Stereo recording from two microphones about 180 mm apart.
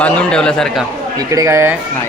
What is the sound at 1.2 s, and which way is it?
Speech, 20° right (ahead or behind).